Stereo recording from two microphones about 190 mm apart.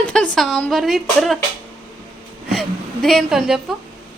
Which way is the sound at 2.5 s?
Centre (ahead or behind).